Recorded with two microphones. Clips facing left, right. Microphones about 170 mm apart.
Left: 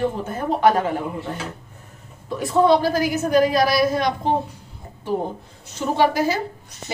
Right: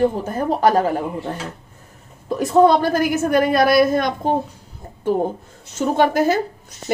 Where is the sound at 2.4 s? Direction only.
50° right (ahead or behind).